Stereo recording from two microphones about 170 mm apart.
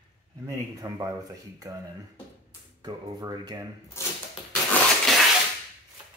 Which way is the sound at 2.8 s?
25° right (ahead or behind).